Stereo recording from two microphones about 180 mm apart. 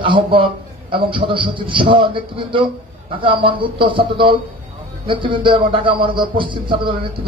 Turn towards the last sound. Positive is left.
turn(degrees=-30)  # may be behind; listen again after turning